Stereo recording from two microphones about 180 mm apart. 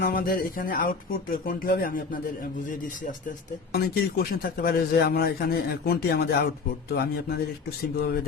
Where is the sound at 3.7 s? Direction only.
60° left (ahead or behind).